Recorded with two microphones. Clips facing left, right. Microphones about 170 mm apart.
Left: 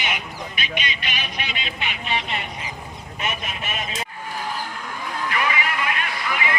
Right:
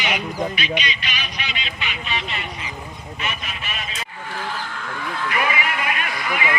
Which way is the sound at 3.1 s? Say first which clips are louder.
Left 2 dB; 45° left (ahead or behind).